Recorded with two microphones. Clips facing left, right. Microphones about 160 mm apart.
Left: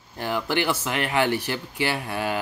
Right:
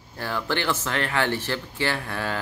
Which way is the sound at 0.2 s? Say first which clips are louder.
Left 2 dB; 15° left (ahead or behind).